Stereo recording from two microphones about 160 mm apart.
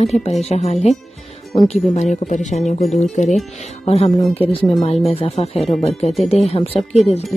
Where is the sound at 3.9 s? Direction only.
40° left (ahead or behind).